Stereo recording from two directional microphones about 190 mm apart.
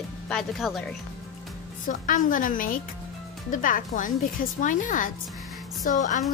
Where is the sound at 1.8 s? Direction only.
45° left (ahead or behind).